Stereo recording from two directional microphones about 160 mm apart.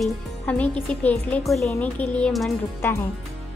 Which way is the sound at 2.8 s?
15° left (ahead or behind).